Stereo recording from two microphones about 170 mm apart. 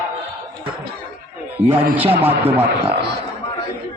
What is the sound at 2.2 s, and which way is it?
Speech, 10° right (ahead or behind).